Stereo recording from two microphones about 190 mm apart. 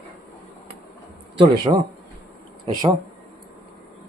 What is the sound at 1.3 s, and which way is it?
A man's voice, 25° right (ahead or behind).